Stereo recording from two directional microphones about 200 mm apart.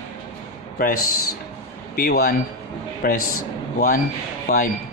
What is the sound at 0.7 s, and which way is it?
A man's voice, 45° left (ahead or behind).